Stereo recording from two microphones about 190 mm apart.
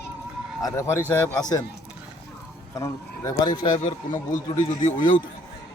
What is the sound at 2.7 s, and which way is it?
A man's voice, 15° left (ahead or behind).